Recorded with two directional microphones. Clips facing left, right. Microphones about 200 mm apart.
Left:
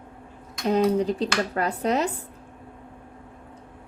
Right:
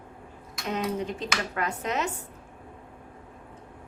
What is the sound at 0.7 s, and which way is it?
Speech, 35° left (ahead or behind).